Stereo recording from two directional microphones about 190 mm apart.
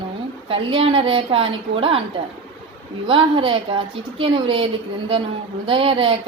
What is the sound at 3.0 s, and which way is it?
A woman's voice, 30° right (ahead or behind).